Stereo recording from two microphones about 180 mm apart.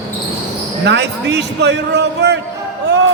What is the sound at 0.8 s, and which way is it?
A man's voice, 70° right (ahead or behind).